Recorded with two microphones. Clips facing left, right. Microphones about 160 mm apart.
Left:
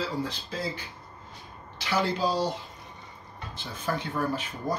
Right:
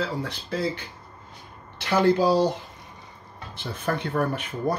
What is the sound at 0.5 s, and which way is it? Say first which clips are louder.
Speech: right 9 dB; 75° right (ahead or behind).